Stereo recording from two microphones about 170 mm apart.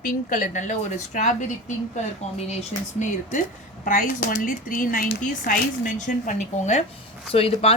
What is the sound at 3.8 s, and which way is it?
Speech, 55° left (ahead or behind).